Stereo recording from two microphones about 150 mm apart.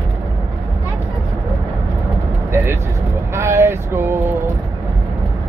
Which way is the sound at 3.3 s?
20° right (ahead or behind).